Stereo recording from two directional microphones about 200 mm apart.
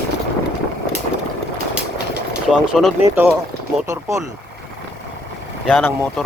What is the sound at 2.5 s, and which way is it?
Speech, centre (ahead or behind).